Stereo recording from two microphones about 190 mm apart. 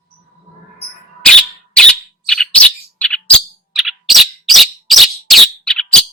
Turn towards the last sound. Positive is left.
turn(degrees=0)  # may be behind; listen again after turning